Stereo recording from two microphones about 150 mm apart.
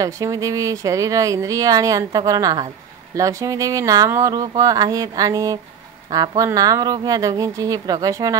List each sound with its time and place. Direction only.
0.0 s speech: 20° right (ahead or behind)